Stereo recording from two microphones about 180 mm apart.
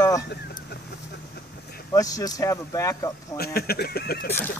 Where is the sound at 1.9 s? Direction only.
20° left (ahead or behind).